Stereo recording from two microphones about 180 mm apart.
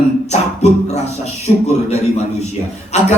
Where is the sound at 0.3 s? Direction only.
40° left (ahead or behind).